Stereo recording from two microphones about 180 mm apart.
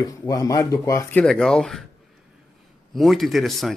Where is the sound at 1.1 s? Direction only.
5° left (ahead or behind).